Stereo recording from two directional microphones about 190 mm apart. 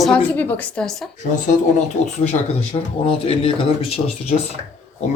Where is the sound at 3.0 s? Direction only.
30° left (ahead or behind).